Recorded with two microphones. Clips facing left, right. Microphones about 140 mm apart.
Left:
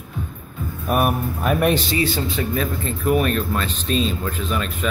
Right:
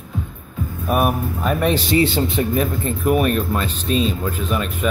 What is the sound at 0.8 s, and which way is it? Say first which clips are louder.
Speech: right 1 dB; centre (ahead or behind).